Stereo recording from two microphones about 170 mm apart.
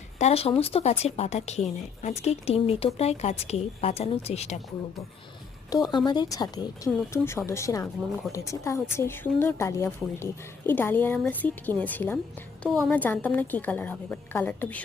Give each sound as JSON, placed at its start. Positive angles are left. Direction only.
{"t": 0.2, "sound": "speech", "side_deg": 35}
{"t": 5.7, "sound": "a woman's voice", "side_deg": 25}